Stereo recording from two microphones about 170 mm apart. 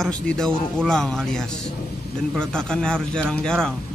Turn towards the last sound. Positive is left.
turn(degrees=5)  # may be behind; listen again after turning